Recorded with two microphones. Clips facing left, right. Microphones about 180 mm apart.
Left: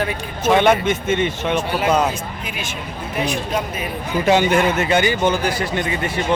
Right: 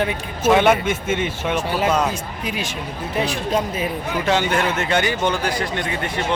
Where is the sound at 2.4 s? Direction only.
35° right (ahead or behind).